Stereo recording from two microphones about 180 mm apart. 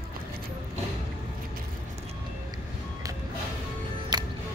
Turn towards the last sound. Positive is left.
turn(degrees=-20)  # may be behind; listen again after turning